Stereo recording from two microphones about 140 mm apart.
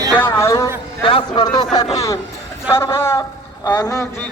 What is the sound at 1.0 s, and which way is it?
Speech, 35° left (ahead or behind).